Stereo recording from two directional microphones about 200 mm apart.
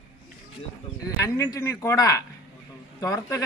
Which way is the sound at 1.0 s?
15° left (ahead or behind).